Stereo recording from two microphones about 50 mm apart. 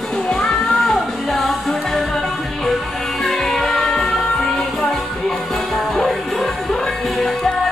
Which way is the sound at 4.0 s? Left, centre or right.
Centre.